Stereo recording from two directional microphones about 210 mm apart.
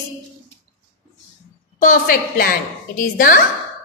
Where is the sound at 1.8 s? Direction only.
40° left (ahead or behind).